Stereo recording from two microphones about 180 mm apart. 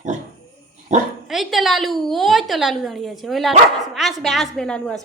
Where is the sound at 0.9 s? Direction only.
40° right (ahead or behind).